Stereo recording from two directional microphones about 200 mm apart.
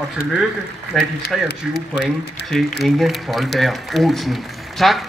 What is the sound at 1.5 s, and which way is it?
Speech, 55° left (ahead or behind).